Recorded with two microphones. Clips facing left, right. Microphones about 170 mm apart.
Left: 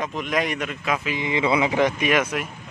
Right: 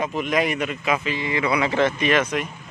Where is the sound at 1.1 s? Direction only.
20° left (ahead or behind).